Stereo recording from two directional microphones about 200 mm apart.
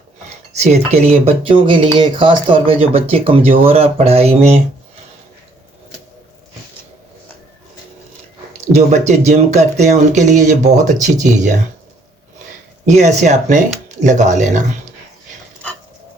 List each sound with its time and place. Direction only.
0.6 s speech: 35° right (ahead or behind)
8.7 s speech: 35° right (ahead or behind)
12.8 s speech: 35° right (ahead or behind)